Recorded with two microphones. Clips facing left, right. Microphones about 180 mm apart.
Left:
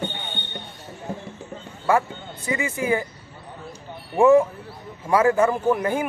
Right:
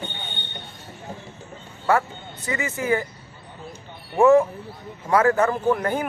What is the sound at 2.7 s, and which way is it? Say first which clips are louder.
Speech: right 2 dB; 15° left (ahead or behind).